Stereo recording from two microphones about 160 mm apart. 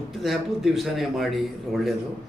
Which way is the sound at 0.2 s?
Centre (ahead or behind).